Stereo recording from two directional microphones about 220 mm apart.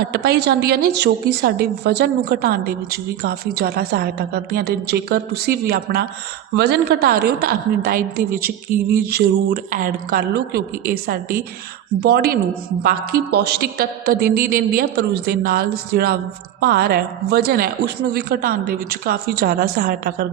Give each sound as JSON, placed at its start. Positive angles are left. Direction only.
{"t": 0.0, "sound": "a woman's voice", "side_deg": -45}